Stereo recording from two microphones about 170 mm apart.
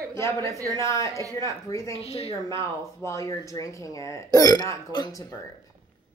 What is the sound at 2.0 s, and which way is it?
Speech, 35° left (ahead or behind).